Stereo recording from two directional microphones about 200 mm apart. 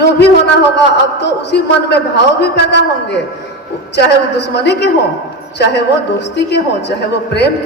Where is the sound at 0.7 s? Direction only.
60° left (ahead or behind).